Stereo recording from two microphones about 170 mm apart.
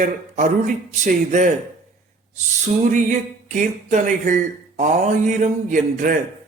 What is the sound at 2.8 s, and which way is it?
Speech, 50° right (ahead or behind).